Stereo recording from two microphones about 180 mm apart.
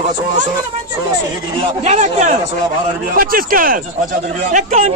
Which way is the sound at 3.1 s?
55° right (ahead or behind).